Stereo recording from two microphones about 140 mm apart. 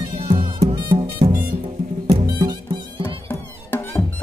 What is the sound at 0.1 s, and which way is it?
Music, 45° right (ahead or behind).